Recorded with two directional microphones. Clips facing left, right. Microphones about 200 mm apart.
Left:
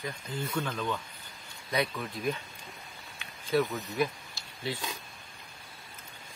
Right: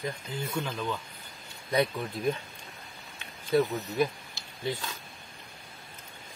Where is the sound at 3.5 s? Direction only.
20° right (ahead or behind).